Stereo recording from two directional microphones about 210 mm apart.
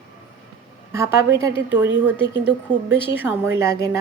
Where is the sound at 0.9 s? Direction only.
15° right (ahead or behind).